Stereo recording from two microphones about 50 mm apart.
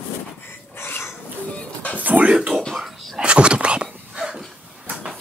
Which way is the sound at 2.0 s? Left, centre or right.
Right.